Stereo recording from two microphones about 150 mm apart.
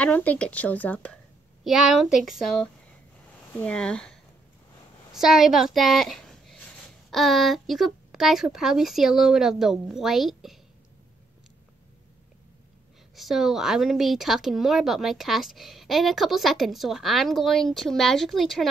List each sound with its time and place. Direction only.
0.0 s speech: 10° left (ahead or behind)
1.6 s a woman's voice: 5° right (ahead or behind)
13.1 s speech: centre (ahead or behind)